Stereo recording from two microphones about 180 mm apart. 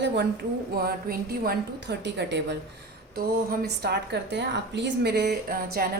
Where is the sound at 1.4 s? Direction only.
70° right (ahead or behind).